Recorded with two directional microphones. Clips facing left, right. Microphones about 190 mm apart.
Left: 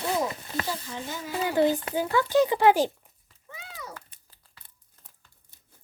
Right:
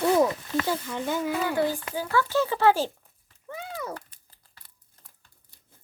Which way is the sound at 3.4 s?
55° right (ahead or behind).